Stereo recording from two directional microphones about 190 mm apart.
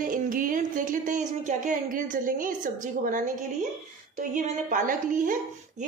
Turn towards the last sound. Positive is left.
turn(degrees=-45)  # may be behind; listen again after turning